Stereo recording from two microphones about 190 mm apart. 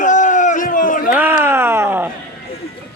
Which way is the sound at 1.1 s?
10° right (ahead or behind).